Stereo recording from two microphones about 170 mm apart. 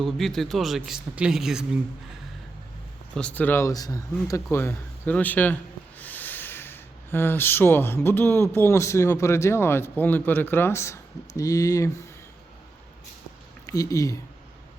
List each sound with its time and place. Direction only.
0.0 s speech: centre (ahead or behind)
3.2 s speech: 10° left (ahead or behind)
13.7 s speech: 20° left (ahead or behind)